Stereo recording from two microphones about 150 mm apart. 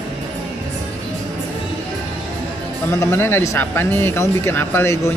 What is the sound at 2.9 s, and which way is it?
Speech, 15° left (ahead or behind).